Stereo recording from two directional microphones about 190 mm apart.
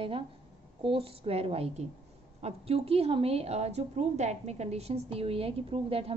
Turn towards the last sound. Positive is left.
turn(degrees=-30)  # may be behind; listen again after turning